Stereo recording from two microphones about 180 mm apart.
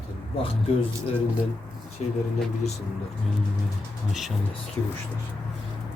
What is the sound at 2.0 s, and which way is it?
Speech, 35° left (ahead or behind).